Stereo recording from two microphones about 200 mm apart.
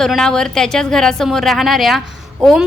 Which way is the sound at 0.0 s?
Centre (ahead or behind).